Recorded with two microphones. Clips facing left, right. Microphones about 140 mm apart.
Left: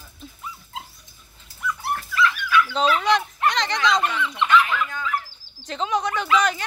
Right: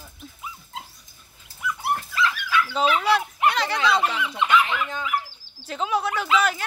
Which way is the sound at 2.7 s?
10° right (ahead or behind).